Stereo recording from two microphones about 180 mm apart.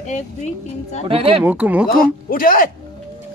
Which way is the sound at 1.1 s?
30° right (ahead or behind).